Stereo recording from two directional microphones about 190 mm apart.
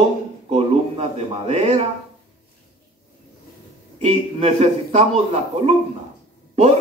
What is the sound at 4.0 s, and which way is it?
A man's voice, 30° right (ahead or behind).